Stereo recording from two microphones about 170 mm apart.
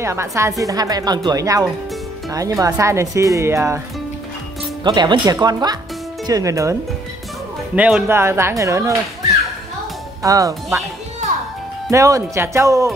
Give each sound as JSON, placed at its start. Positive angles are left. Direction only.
{"t": 0.0, "sound": "a woman's voice", "side_deg": -15}
{"t": 4.8, "sound": "a woman's voice", "side_deg": -25}
{"t": 10.2, "sound": "a woman's voice", "side_deg": -20}
{"t": 11.9, "sound": "speech", "side_deg": -20}